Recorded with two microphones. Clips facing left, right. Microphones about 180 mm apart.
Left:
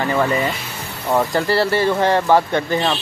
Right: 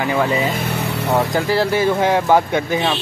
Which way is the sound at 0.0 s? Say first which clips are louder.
Even; 5° right (ahead or behind).